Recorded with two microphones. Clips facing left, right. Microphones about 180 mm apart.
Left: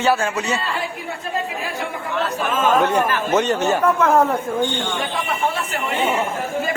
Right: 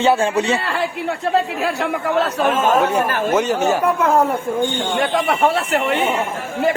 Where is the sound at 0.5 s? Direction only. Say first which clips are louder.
Right 4 dB; 70° right (ahead or behind).